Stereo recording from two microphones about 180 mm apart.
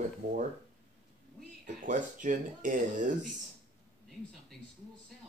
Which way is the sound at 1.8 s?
45° right (ahead or behind).